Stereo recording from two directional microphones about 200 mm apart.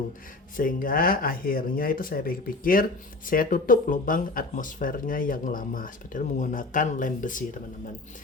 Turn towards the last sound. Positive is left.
turn(degrees=40)  # may be behind; listen again after turning